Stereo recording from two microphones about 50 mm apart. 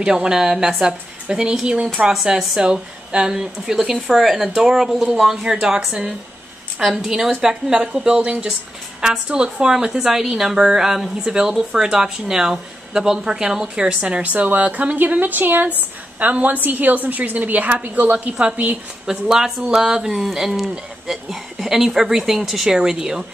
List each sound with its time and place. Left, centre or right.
0.0 s a woman's voice: centre
19.0 s a woman's voice: centre